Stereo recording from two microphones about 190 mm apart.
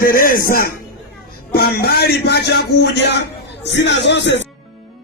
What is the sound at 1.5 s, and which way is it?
Speech, 55° left (ahead or behind).